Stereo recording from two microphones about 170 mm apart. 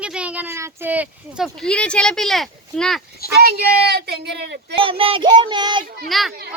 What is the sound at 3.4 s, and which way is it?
Speech, 70° right (ahead or behind).